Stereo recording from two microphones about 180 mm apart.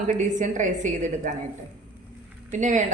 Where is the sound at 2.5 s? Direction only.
45° right (ahead or behind).